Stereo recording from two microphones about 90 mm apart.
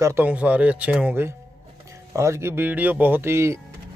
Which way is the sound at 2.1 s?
30° right (ahead or behind).